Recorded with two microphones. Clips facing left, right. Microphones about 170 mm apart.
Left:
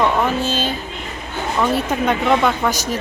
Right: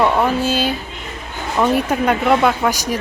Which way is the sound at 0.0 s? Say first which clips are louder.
Right 2 dB; 10° right (ahead or behind).